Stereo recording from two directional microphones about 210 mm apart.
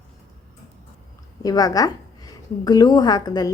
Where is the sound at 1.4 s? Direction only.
15° left (ahead or behind).